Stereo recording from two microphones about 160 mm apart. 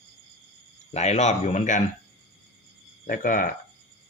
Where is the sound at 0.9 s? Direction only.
45° left (ahead or behind).